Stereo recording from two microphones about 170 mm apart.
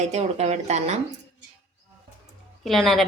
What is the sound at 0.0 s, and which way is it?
Speech, 40° right (ahead or behind).